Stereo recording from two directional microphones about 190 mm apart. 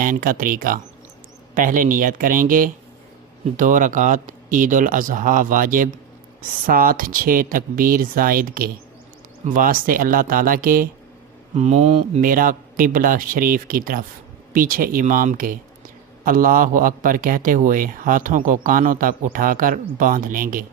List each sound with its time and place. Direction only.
0.0 s a man's voice: 45° right (ahead or behind)
11.5 s a man's voice: 35° right (ahead or behind)